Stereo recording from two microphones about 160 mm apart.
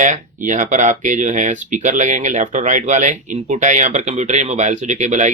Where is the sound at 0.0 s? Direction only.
55° right (ahead or behind).